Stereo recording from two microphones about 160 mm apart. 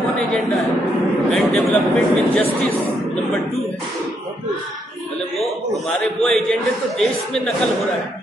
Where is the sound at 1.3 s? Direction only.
5° left (ahead or behind).